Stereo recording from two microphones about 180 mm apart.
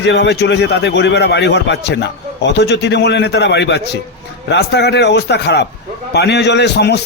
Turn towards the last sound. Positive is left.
turn(degrees=70)  # may be behind; listen again after turning